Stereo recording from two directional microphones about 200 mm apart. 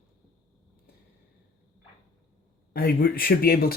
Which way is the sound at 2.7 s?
50° left (ahead or behind).